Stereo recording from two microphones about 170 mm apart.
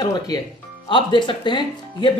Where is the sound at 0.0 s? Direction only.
25° left (ahead or behind).